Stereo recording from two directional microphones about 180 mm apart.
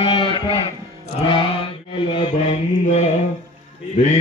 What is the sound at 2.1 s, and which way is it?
Mantra, 35° left (ahead or behind).